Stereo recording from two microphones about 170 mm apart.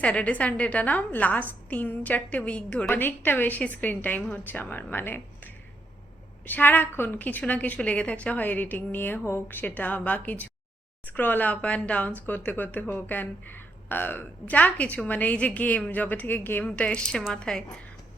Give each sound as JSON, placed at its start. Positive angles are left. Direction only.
{"t": 0.0, "sound": "speech", "side_deg": 5}